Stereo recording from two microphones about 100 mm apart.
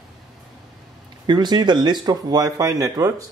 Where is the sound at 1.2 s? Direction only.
45° right (ahead or behind).